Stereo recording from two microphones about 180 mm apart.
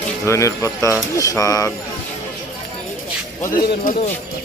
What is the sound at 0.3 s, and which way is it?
Speech, 15° left (ahead or behind).